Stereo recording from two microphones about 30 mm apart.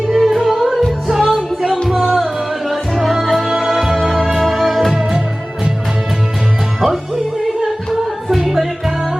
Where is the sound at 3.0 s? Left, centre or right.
Centre.